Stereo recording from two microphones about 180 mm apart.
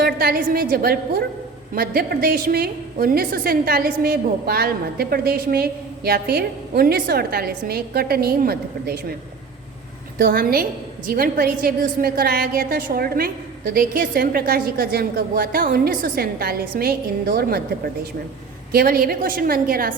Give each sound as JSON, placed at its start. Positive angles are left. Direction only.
{"t": 0.0, "sound": "a woman's voice", "side_deg": -55}
{"t": 10.2, "sound": "a woman's voice", "side_deg": -55}
{"t": 18.7, "sound": "a woman's voice", "side_deg": -55}